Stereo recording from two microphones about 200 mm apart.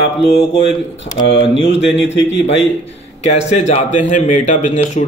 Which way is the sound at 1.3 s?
65° left (ahead or behind).